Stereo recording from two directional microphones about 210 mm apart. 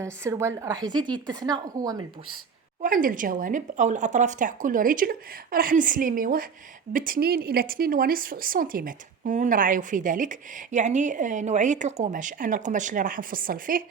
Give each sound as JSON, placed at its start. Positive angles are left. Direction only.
{"t": 0.0, "sound": "a woman's voice", "side_deg": -15}
{"t": 2.8, "sound": "speech", "side_deg": -40}